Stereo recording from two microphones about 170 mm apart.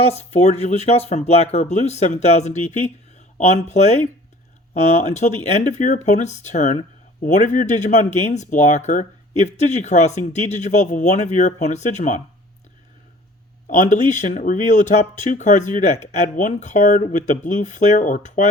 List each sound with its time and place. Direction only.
0.0 s speech: 40° left (ahead or behind)
13.7 s speech: 45° left (ahead or behind)